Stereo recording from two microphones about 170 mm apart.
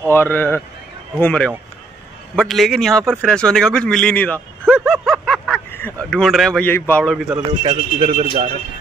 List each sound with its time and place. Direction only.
0.0 s a man's voice: 10° left (ahead or behind)
4.6 s snicker: 5° right (ahead or behind)
5.8 s a man's voice: 10° left (ahead or behind)
7.6 s speech: 30° right (ahead or behind)